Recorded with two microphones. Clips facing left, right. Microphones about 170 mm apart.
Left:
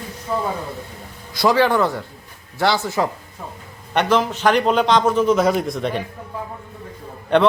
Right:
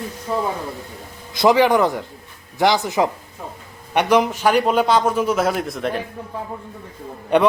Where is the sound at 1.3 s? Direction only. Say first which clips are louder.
Right 2 dB; 15° right (ahead or behind).